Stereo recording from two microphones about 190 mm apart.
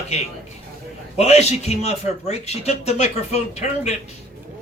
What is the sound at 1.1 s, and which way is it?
A man's voice, 35° left (ahead or behind).